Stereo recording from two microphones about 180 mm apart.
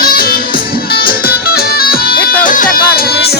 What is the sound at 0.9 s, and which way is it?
Music, 60° left (ahead or behind).